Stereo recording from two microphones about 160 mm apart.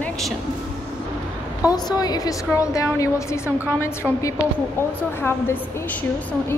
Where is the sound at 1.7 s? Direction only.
25° left (ahead or behind).